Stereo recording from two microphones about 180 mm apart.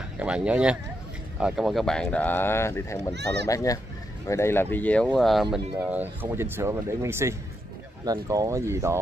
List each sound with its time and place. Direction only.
0.2 s speech: 5° right (ahead or behind)
5.8 s speech: 10° right (ahead or behind)